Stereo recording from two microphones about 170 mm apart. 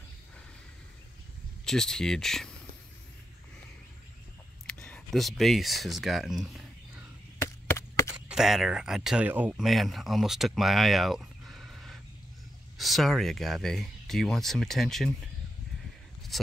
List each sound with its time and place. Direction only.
1.7 s speech: 5° left (ahead or behind)
4.6 s speech: 5° left (ahead or behind)
7.4 s chop: 15° left (ahead or behind)
8.1 s speech: 5° right (ahead or behind)